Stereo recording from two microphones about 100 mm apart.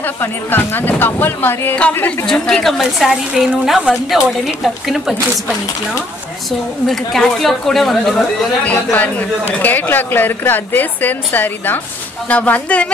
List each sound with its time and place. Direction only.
0.0 s a woman's voice: 20° left (ahead or behind)
2.2 s a woman's voice: 5° left (ahead or behind)
6.9 s a woman's voice: 5° left (ahead or behind)
9.6 s a woman's voice: 20° left (ahead or behind)